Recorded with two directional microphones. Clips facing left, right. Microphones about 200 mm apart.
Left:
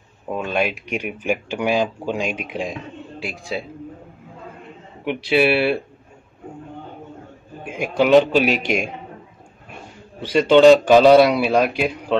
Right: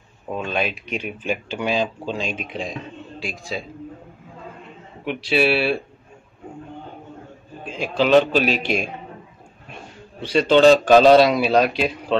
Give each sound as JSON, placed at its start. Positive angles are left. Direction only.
{"t": 0.3, "sound": "speech", "side_deg": 10}
{"t": 3.2, "sound": "a man's voice", "side_deg": 65}
{"t": 5.3, "sound": "speech", "side_deg": 15}
{"t": 7.6, "sound": "speech", "side_deg": 15}
{"t": 10.5, "sound": "speech", "side_deg": 15}